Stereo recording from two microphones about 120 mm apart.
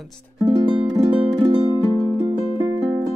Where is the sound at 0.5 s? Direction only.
45° right (ahead or behind).